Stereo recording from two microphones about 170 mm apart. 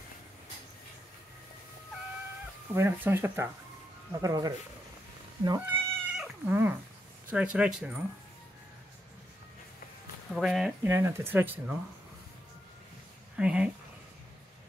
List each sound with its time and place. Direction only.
2.7 s speech: 15° right (ahead or behind)
6.1 s cat: 5° right (ahead or behind)
7.2 s speech: 5° right (ahead or behind)
10.3 s speech: centre (ahead or behind)
10.9 s speech: 15° right (ahead or behind)
13.4 s speech: 5° right (ahead or behind)